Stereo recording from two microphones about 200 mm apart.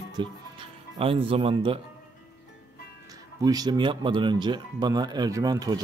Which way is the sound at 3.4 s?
20° right (ahead or behind).